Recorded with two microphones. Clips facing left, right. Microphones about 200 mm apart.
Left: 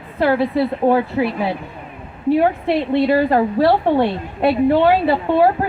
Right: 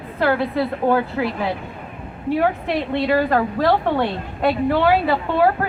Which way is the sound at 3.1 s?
30° left (ahead or behind).